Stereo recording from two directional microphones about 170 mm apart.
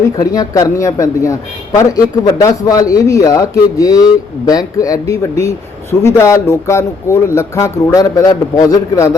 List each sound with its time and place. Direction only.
0.2 s a man's voice: 20° left (ahead or behind)